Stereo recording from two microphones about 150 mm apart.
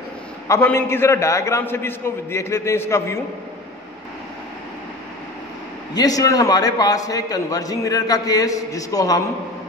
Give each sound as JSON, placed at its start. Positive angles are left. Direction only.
{"t": 0.5, "sound": "a man's voice", "side_deg": 15}
{"t": 5.9, "sound": "a man's voice", "side_deg": 25}